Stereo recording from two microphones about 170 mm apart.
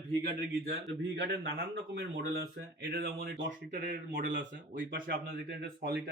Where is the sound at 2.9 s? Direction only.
75° right (ahead or behind).